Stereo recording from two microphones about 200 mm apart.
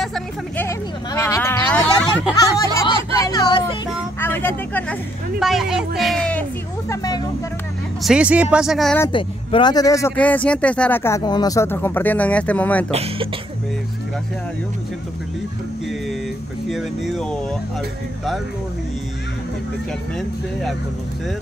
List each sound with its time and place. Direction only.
0.0 s vehicle: centre (ahead or behind)
0.7 s a sound: 15° left (ahead or behind)
2.4 s speech: 15° left (ahead or behind)
5.4 s speech: centre (ahead or behind)
6.9 s speech: 20° left (ahead or behind)
8.0 s speech: 5° right (ahead or behind)
9.1 s speech: 25° left (ahead or behind); by 12.8 s 5° left (ahead or behind)
12.9 s speech: 30° right (ahead or behind)
16.6 s speech: centre (ahead or behind)